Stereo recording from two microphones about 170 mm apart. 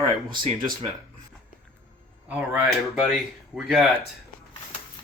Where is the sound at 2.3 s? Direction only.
10° right (ahead or behind).